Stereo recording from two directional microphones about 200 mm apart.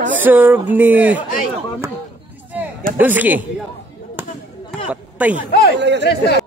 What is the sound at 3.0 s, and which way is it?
Speech, 10° right (ahead or behind).